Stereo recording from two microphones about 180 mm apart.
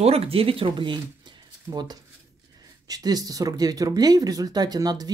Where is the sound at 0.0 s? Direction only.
35° right (ahead or behind).